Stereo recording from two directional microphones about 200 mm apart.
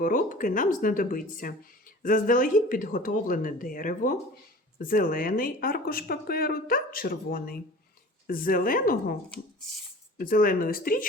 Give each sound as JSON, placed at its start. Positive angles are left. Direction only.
{"t": 0.0, "sound": "speech", "side_deg": 40}
{"t": 10.2, "sound": "speech", "side_deg": 45}